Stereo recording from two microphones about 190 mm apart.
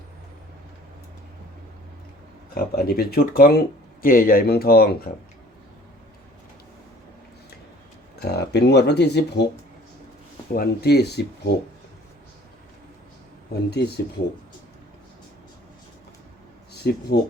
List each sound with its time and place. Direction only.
2.6 s speech: 55° left (ahead or behind)
8.2 s speech: 60° left (ahead or behind)
10.5 s speech: 55° left (ahead or behind)
13.7 s speech: 60° left (ahead or behind)
16.7 s speech: 60° left (ahead or behind)